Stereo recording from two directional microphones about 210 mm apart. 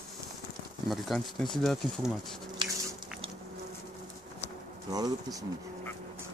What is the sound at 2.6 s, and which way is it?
Biting, 20° right (ahead or behind).